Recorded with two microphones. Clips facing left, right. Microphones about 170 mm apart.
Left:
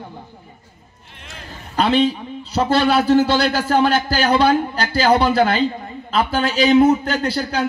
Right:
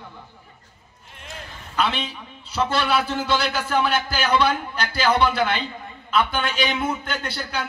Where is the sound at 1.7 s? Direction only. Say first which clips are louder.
Left 9 dB; 35° left (ahead or behind).